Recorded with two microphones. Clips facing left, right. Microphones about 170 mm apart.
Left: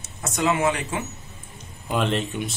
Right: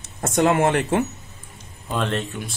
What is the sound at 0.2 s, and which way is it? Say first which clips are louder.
Speech: right 4 dB; 55° right (ahead or behind).